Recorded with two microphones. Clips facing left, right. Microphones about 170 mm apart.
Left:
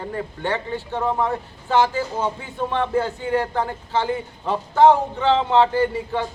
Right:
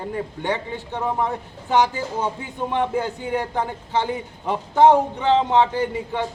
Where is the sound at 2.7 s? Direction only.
15° right (ahead or behind).